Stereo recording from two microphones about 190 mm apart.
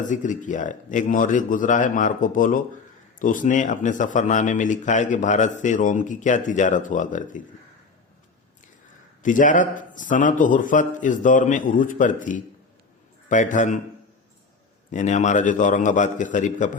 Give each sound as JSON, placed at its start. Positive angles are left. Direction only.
{"t": 0.0, "sound": "speech", "side_deg": 40}
{"t": 9.2, "sound": "speech", "side_deg": 45}
{"t": 14.8, "sound": "speech", "side_deg": 40}